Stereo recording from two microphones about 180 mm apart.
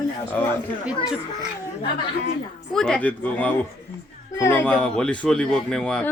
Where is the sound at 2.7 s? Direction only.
5° left (ahead or behind).